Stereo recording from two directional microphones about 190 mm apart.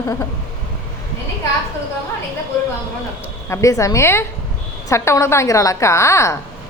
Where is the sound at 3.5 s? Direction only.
15° left (ahead or behind).